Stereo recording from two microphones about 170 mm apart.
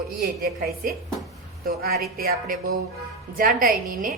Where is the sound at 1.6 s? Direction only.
65° right (ahead or behind).